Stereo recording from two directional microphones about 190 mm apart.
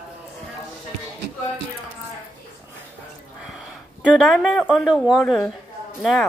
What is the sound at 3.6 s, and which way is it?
Speech, centre (ahead or behind).